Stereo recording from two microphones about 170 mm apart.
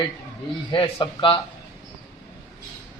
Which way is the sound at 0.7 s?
30° left (ahead or behind).